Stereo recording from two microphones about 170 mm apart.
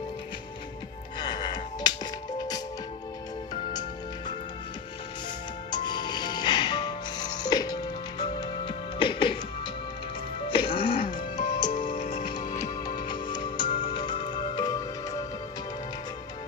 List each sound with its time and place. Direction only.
1.2 s music: 25° left (ahead or behind)
5.7 s music: 25° left (ahead or behind)
10.5 s music: 30° left (ahead or behind)
11.1 s music: 50° left (ahead or behind)
12.0 s music: 35° left (ahead or behind)
12.8 s music: 25° left (ahead or behind)